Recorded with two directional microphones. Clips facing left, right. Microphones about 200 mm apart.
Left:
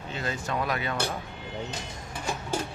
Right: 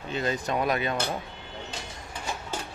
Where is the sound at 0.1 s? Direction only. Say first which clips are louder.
Right 4 dB; 20° right (ahead or behind).